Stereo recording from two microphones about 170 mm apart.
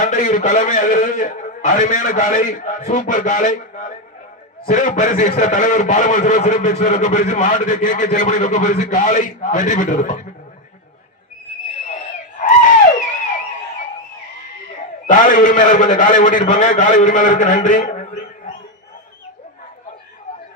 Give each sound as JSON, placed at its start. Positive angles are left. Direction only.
{"t": 0.0, "sound": "a man's voice", "side_deg": 50}
{"t": 15.0, "sound": "a man's voice", "side_deg": 50}